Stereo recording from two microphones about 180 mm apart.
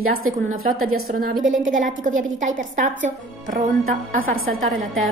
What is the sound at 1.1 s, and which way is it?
A woman's voice, 55° right (ahead or behind).